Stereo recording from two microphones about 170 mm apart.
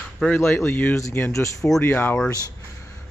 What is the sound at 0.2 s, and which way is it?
Speech, 10° left (ahead or behind).